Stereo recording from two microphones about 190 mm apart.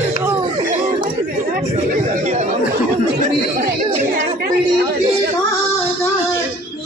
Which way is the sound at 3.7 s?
50° right (ahead or behind).